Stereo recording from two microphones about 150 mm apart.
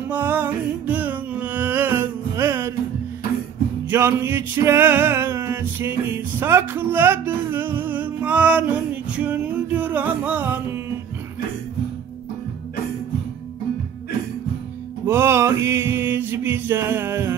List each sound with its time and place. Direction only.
0.1 s music: 15° right (ahead or behind)
3.9 s music: 15° right (ahead or behind)
15.0 s male singing: 15° right (ahead or behind)